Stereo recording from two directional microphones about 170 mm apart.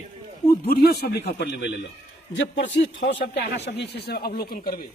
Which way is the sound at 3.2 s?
80° left.